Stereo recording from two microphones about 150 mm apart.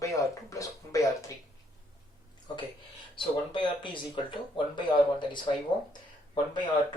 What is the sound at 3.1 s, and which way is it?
Speech, 30° left (ahead or behind).